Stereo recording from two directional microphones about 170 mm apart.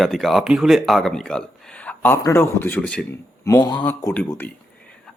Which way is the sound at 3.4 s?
20° left (ahead or behind).